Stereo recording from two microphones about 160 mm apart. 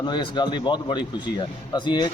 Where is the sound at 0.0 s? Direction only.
25° left (ahead or behind).